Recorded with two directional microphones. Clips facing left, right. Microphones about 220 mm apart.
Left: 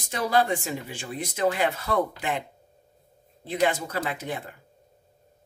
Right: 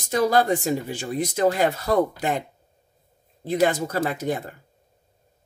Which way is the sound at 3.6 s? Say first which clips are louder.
Right 3 dB; 40° right (ahead or behind).